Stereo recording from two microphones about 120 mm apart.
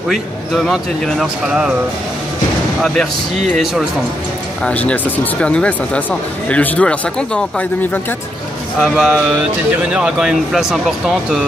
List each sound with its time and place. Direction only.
0.1 s a man's voice: centre (ahead or behind)
4.6 s speech: 10° left (ahead or behind)
8.8 s a man's voice: centre (ahead or behind)